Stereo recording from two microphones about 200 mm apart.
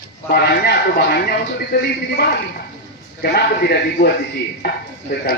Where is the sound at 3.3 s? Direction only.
55° left (ahead or behind).